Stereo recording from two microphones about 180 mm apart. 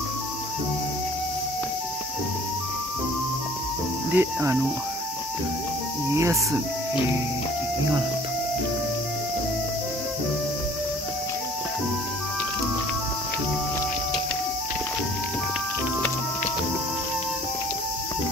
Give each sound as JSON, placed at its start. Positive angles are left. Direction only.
{"t": 4.1, "sound": "speech", "side_deg": -15}